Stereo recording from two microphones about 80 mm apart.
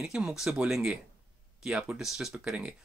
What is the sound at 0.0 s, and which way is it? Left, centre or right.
Speech, centre.